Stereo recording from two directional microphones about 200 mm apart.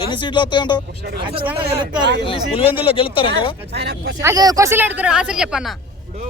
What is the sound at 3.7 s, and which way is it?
Speech, 55° right (ahead or behind).